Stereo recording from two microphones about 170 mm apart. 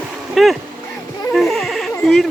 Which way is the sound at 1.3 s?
Centre (ahead or behind).